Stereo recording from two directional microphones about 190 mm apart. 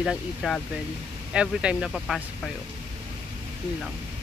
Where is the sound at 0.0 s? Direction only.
Centre (ahead or behind).